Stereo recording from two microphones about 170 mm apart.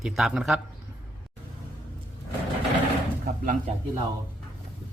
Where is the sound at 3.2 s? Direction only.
55° right (ahead or behind).